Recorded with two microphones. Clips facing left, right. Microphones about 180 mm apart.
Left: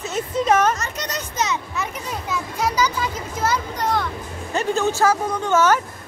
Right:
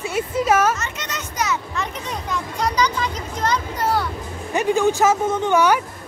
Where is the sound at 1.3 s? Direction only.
20° left (ahead or behind).